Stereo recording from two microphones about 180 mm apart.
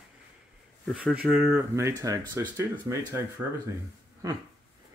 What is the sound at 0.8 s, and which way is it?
Speech, 5° right (ahead or behind).